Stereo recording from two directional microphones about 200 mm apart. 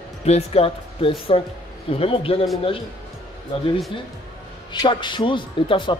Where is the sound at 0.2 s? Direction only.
30° left (ahead or behind).